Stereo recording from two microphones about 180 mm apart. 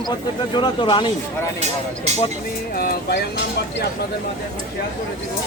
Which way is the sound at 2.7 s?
55° left (ahead or behind).